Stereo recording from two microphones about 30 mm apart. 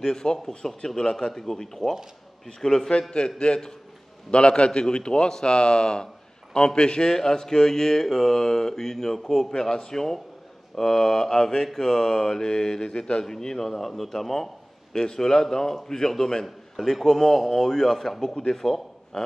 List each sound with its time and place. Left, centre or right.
0.0 s mantra: left
1.3 s speech: centre
2.9 s a man's voice: left
5.3 s mantra: left
6.5 s speech: left
10.8 s mantra: centre; by 13.2 s left
13.2 s speech: centre
14.9 s a man's voice: left